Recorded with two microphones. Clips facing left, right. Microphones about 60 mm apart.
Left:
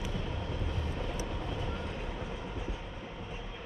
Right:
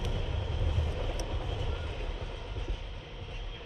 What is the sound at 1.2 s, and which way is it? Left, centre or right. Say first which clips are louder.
Train: left 1 dB; centre.